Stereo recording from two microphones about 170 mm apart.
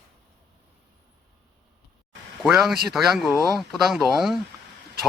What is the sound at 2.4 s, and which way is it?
A man's voice, centre (ahead or behind).